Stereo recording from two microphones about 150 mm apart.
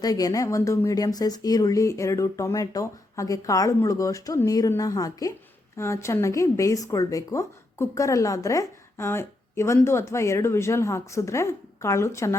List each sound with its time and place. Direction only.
0.0 s speech: 25° left (ahead or behind)